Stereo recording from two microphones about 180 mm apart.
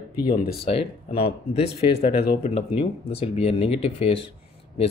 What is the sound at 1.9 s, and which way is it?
Speech, 65° left (ahead or behind).